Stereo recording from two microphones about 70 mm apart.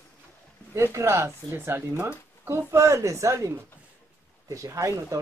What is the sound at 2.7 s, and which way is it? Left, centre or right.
Speech, right.